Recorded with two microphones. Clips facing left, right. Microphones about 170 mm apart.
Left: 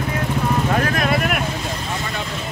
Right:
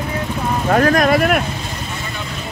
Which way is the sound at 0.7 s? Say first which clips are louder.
Right 6 dB; 50° right (ahead or behind).